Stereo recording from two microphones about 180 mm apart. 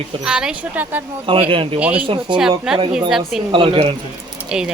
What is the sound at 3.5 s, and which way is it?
Speech, 30° right (ahead or behind).